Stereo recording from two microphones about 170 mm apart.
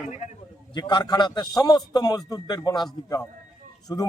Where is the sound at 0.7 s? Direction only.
25° left (ahead or behind).